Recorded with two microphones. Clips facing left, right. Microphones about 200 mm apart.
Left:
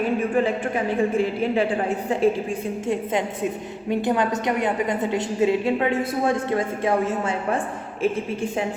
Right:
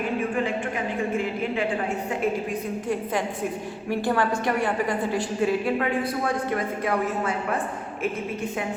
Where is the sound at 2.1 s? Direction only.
25° left (ahead or behind).